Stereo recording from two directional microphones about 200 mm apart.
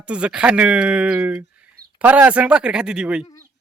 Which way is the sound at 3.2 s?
15° left (ahead or behind).